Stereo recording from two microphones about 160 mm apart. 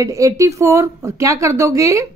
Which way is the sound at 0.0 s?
20° right (ahead or behind).